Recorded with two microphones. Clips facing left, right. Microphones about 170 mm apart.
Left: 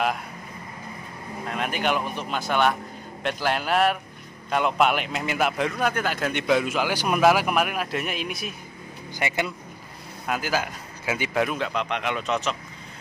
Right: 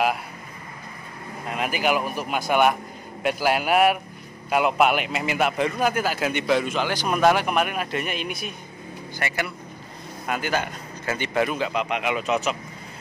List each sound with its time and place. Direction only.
1.5 s a man's voice: 5° right (ahead or behind)
9.2 s speech: 15° left (ahead or behind)
10.2 s a man's voice: centre (ahead or behind)